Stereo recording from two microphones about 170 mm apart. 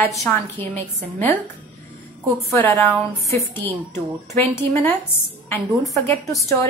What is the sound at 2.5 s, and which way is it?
A woman's voice, 10° left (ahead or behind).